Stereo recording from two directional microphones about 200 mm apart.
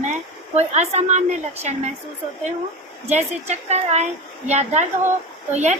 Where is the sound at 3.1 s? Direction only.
35° right (ahead or behind).